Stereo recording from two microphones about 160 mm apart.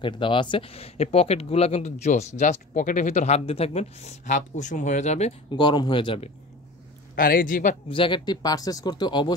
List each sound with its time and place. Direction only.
0.0 s speech: 30° left (ahead or behind)
5.5 s speech: 30° left (ahead or behind)
7.2 s a man's voice: 60° left (ahead or behind)
7.9 s speech: 30° left (ahead or behind)